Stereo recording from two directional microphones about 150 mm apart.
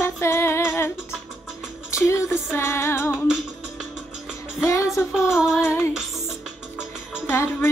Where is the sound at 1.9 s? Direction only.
20° left (ahead or behind).